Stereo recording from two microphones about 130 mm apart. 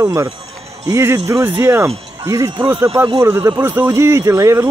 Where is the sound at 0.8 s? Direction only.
25° right (ahead or behind).